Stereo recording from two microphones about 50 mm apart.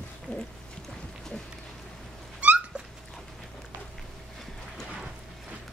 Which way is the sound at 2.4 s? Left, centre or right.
Right.